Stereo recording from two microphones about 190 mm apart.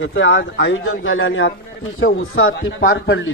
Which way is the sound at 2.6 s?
65° left (ahead or behind).